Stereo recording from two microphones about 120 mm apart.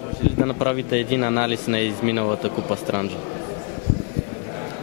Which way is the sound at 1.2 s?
20° left (ahead or behind).